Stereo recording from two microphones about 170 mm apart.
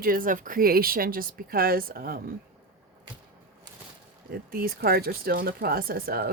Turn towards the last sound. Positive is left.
turn(degrees=-60)  # may be behind; listen again after turning